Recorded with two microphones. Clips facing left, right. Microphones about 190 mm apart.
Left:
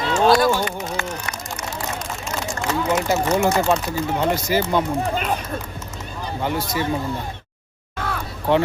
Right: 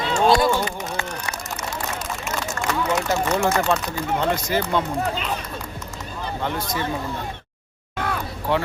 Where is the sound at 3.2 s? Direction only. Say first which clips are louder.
Left 2 dB; 10° left (ahead or behind).